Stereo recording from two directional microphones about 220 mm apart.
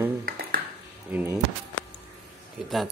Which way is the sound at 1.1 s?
10° right (ahead or behind).